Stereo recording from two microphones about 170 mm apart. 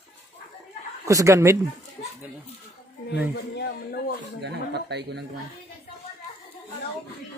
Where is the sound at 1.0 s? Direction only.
20° right (ahead or behind).